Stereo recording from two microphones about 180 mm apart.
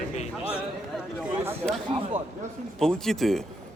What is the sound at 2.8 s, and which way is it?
Speech, 5° left (ahead or behind).